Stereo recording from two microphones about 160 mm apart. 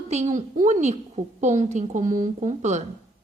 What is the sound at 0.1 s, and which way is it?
A woman's voice, 45° right (ahead or behind).